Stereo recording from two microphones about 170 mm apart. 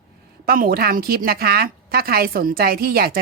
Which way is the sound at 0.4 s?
60° right (ahead or behind).